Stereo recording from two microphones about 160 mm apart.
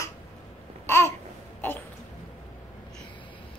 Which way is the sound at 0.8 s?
15° left (ahead or behind).